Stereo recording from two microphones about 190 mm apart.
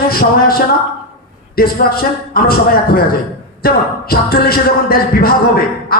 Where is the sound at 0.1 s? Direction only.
50° left (ahead or behind).